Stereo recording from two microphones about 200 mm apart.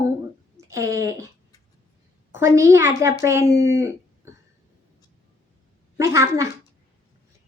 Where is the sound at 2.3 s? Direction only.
15° right (ahead or behind).